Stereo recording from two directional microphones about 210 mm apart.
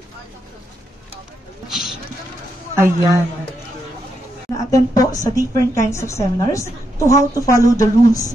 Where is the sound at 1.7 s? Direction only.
Centre (ahead or behind).